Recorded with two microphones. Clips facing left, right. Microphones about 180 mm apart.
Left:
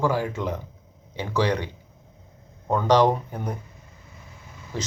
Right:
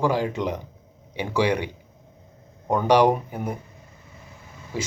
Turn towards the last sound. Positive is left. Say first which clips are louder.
# right 2 dB
turn(degrees=-10)  # may be behind; listen again after turning